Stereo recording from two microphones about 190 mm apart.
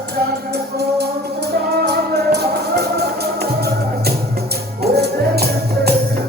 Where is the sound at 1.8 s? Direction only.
60° right (ahead or behind).